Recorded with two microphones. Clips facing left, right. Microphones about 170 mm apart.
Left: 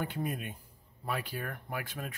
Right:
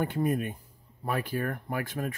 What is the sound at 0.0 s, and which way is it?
Speech, 50° right (ahead or behind).